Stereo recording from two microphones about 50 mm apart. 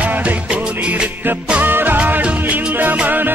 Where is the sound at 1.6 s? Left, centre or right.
Right.